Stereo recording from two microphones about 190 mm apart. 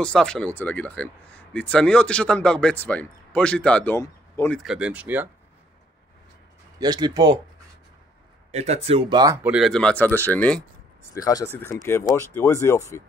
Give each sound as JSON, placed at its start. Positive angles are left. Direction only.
{"t": 0.0, "sound": "speech", "side_deg": 5}
{"t": 4.6, "sound": "speech", "side_deg": -5}
{"t": 6.8, "sound": "speech", "side_deg": -20}
{"t": 8.5, "sound": "speech", "side_deg": -35}